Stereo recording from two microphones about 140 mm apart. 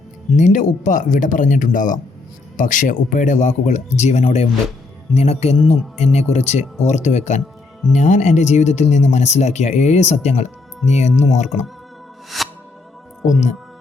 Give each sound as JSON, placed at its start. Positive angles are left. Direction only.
{"t": 0.3, "sound": "speech", "side_deg": 60}
{"t": 12.3, "sound": "music", "side_deg": 0}